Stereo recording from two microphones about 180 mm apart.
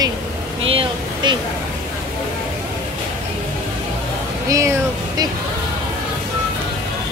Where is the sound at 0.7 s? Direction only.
30° right (ahead or behind).